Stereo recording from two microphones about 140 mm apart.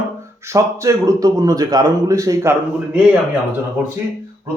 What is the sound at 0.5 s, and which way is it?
A man's voice, 25° right (ahead or behind).